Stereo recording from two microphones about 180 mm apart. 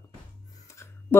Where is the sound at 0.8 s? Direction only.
15° left (ahead or behind).